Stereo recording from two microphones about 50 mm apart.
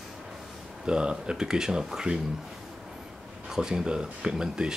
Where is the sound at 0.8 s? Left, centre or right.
Centre.